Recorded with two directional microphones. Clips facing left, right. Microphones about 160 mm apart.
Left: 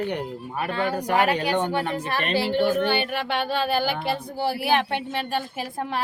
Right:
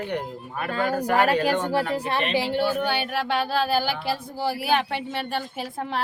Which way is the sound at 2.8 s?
5° right (ahead or behind).